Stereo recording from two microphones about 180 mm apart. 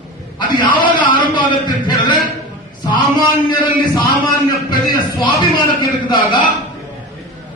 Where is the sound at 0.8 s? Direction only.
25° left (ahead or behind).